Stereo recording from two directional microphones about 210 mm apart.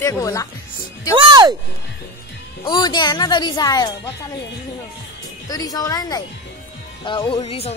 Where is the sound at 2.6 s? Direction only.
20° left (ahead or behind).